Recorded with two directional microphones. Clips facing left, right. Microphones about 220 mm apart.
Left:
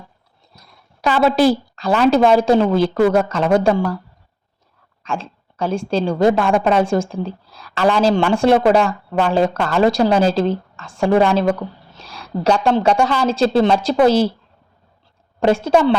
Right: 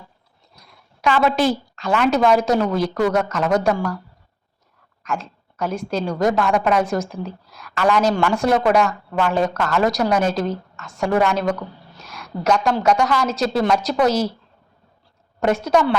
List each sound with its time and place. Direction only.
1.0 s a woman's voice: 35° left (ahead or behind)
5.0 s a woman's voice: 30° left (ahead or behind)
15.4 s a woman's voice: 30° left (ahead or behind)